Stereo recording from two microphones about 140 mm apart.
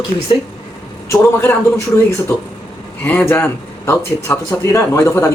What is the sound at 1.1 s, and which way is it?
Speech, 20° left (ahead or behind).